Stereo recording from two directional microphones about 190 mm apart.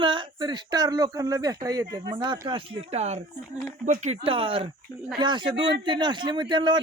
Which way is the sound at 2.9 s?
35° right (ahead or behind).